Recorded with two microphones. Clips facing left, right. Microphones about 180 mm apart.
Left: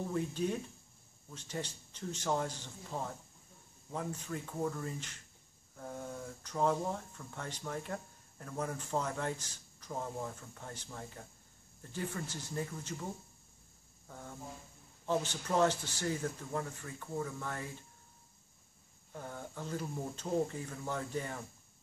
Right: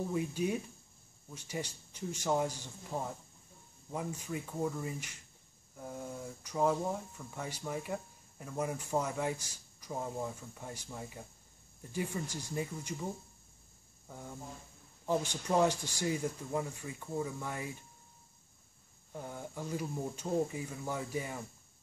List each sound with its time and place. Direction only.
0.1 s speech: 10° right (ahead or behind)
14.0 s speech: 10° right (ahead or behind)
19.1 s speech: 10° right (ahead or behind)